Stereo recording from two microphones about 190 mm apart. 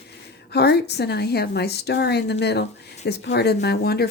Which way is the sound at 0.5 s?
60° left (ahead or behind).